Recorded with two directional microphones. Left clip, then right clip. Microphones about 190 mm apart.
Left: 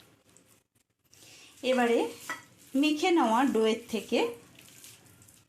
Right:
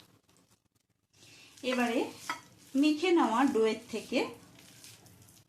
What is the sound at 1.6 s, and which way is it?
Speech, 45° left (ahead or behind).